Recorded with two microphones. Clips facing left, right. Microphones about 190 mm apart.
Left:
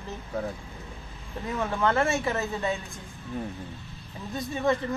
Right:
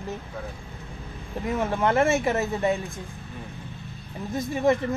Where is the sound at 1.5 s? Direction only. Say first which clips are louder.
Right 3 dB; 20° right (ahead or behind).